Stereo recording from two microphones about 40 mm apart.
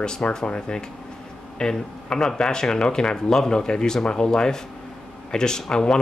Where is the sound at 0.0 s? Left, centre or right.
Centre.